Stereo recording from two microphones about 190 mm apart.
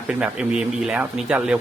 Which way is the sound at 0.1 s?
5° right (ahead or behind).